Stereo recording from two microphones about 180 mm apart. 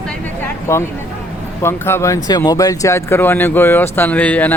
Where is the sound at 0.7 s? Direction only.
15° left (ahead or behind).